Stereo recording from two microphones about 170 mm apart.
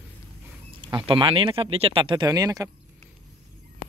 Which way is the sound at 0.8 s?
25° right (ahead or behind).